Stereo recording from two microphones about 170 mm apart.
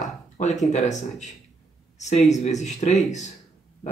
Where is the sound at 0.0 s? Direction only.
45° left (ahead or behind).